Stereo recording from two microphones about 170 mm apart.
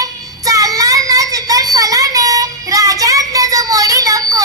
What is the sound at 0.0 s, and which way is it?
Child singing, 20° right (ahead or behind).